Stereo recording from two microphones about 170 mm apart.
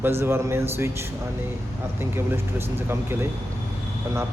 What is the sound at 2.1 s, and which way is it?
Speech, 15° right (ahead or behind).